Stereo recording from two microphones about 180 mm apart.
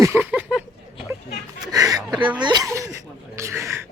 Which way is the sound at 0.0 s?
10° right (ahead or behind).